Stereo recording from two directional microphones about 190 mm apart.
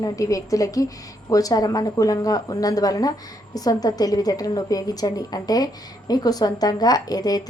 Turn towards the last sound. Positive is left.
turn(degrees=20)  # may be behind; listen again after turning